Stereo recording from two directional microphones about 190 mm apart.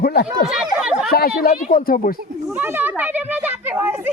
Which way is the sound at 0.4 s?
5° right (ahead or behind).